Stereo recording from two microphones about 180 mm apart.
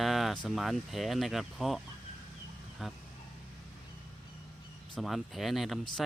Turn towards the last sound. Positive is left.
turn(degrees=0)  # may be behind; listen again after turning